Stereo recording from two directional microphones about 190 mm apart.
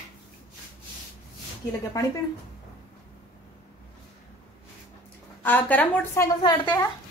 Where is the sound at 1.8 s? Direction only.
15° left (ahead or behind).